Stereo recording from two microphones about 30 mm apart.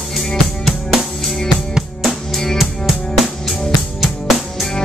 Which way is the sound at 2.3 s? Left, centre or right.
Centre.